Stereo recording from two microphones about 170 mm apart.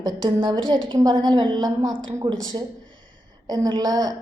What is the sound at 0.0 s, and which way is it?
A woman's voice, 30° right (ahead or behind).